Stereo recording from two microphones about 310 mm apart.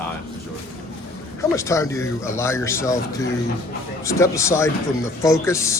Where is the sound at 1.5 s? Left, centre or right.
Centre.